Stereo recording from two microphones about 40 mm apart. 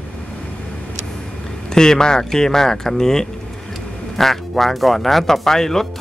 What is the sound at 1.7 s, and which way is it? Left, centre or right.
Speech, centre.